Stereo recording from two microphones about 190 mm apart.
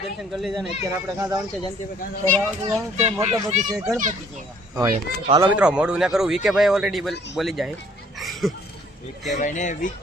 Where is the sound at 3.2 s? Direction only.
35° right (ahead or behind).